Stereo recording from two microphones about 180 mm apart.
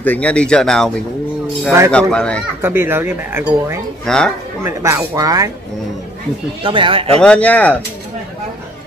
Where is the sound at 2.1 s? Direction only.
5° left (ahead or behind).